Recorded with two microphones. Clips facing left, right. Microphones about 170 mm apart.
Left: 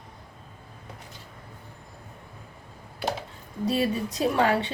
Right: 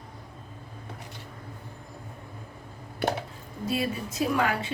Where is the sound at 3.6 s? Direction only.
30° left (ahead or behind).